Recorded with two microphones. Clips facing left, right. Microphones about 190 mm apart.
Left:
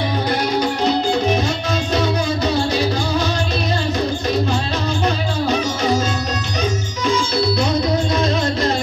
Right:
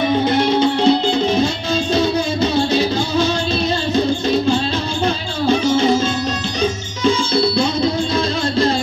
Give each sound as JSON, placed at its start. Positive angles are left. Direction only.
{"t": 0.3, "sound": "music", "side_deg": -25}
{"t": 2.0, "sound": "music", "side_deg": -25}
{"t": 7.1, "sound": "music", "side_deg": -30}